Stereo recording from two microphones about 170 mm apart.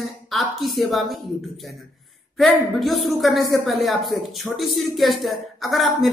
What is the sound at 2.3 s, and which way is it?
A woman's voice, centre (ahead or behind).